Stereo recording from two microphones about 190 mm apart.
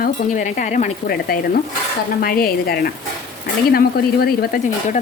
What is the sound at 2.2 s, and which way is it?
Speech, 50° left (ahead or behind).